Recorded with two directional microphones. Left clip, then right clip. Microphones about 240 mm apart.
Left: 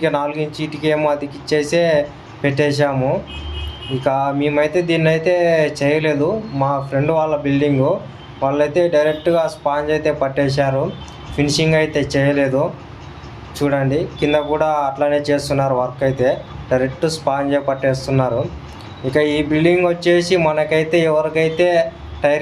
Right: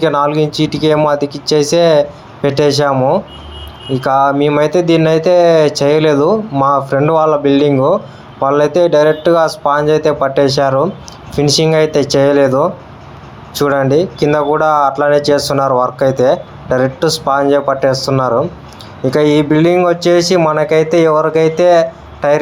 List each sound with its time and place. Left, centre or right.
0.0 s speech: right